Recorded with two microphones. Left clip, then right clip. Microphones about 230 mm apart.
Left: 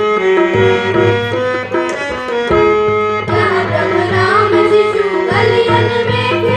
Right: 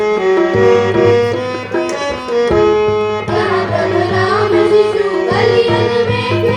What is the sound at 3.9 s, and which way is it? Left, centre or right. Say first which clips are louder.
Music: left 3 dB; left.